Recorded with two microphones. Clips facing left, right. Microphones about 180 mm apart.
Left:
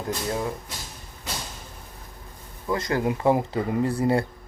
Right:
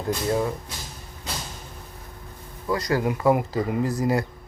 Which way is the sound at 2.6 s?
25° left (ahead or behind).